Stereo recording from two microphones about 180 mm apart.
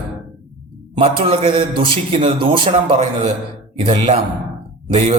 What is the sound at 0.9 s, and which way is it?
A man's voice, 30° right (ahead or behind).